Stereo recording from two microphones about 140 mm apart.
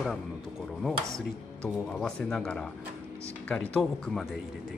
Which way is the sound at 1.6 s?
5° left (ahead or behind).